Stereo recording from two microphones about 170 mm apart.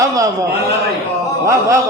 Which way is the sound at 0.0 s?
20° right (ahead or behind).